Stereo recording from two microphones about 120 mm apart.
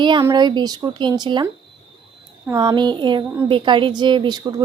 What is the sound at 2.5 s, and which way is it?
A woman's voice, 35° right (ahead or behind).